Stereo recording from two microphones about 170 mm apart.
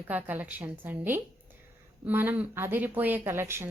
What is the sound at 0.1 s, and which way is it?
A woman's voice, 10° right (ahead or behind).